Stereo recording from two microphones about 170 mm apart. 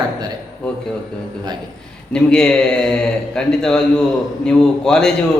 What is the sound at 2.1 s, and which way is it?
Speech, 5° left (ahead or behind).